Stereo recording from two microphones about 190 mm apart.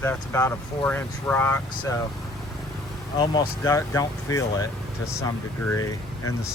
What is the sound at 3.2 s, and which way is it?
Speech, 15° left (ahead or behind).